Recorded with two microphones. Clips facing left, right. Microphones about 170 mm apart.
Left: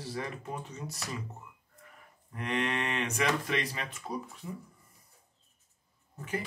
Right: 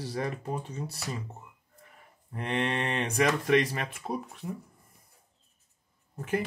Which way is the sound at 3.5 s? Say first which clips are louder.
Right 8 dB; 50° right (ahead or behind).